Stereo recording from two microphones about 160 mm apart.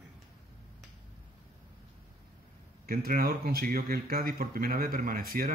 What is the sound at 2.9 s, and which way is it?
Speech, 65° right (ahead or behind).